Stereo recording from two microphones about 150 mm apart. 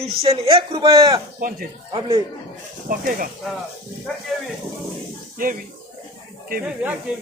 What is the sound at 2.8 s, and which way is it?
Speech, 70° right (ahead or behind).